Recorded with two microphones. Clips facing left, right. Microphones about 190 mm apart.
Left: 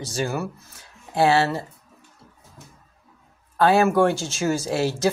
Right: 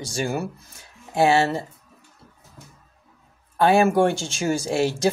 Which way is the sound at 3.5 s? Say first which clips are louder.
Even; 20° right (ahead or behind).